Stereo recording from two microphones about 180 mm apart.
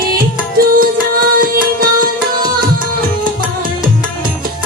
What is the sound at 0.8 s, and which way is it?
Music, 50° right (ahead or behind).